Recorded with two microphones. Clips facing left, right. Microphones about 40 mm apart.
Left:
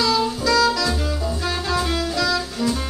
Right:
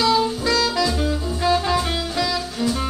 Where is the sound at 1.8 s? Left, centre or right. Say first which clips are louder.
Left 1 dB; right.